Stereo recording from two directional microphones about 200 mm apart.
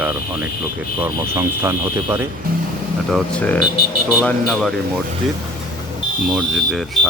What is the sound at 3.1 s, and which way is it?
Speech, 5° left (ahead or behind).